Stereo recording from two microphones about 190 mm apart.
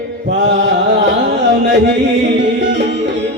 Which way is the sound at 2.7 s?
65° right (ahead or behind).